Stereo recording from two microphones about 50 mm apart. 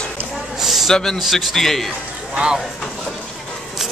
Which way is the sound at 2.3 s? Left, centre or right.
Centre.